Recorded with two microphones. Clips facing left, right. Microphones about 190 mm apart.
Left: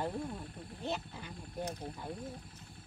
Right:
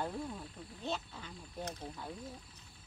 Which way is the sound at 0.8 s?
15° left (ahead or behind).